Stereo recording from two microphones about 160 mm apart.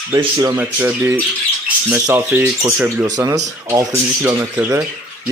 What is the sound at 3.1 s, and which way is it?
Speech, 20° right (ahead or behind).